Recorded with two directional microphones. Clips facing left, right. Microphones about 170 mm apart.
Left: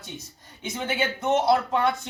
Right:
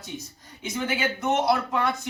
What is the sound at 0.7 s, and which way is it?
Speech, 30° left (ahead or behind).